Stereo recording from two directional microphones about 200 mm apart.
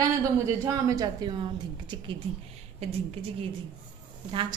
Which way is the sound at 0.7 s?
15° right (ahead or behind).